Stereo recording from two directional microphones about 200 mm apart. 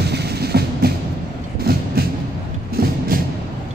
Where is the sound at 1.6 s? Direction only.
50° right (ahead or behind).